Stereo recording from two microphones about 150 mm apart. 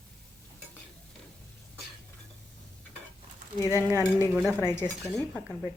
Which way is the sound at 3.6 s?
15° left (ahead or behind).